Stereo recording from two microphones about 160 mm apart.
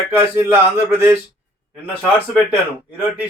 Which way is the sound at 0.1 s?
15° right (ahead or behind).